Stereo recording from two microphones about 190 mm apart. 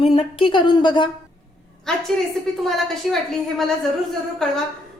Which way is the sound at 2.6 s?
Centre (ahead or behind).